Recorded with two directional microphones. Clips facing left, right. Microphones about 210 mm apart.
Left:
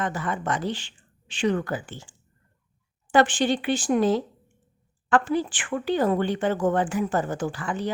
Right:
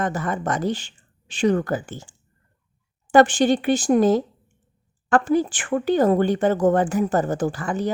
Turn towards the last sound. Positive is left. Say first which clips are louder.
# right 4 dB
turn(degrees=-45)  # may be behind; listen again after turning